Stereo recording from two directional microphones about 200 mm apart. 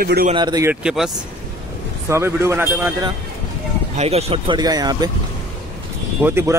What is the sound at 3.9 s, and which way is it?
Speech, 30° right (ahead or behind).